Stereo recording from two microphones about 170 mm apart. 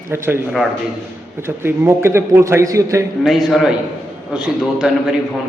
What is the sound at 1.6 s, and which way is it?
A man's voice, 15° right (ahead or behind).